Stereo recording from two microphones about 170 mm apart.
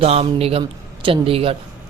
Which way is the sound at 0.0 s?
35° right (ahead or behind).